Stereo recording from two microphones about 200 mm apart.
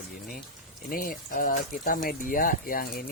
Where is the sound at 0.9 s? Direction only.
45° left (ahead or behind).